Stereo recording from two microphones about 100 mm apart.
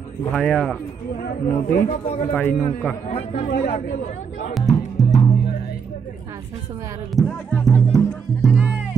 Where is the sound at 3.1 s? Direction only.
75° left (ahead or behind).